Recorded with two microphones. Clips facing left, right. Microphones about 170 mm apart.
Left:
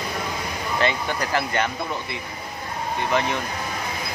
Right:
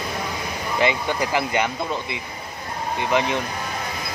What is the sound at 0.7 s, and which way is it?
Speech, 15° right (ahead or behind).